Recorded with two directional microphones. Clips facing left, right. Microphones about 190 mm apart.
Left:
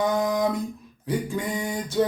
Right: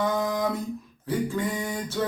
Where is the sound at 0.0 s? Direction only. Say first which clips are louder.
Left 3 dB; 15° left (ahead or behind).